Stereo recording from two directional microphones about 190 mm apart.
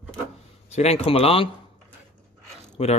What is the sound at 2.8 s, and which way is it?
Speech, 35° left (ahead or behind).